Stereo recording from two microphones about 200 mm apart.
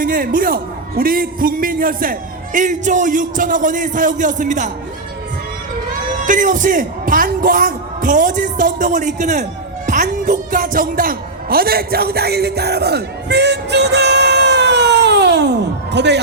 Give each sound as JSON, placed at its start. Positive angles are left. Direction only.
{"t": 0.0, "sound": "a man's voice", "side_deg": -45}
{"t": 6.2, "sound": "a man's voice", "side_deg": -40}